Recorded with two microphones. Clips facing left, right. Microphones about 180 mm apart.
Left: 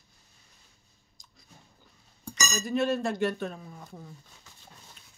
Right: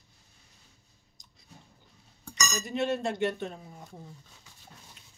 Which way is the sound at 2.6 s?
25° right (ahead or behind).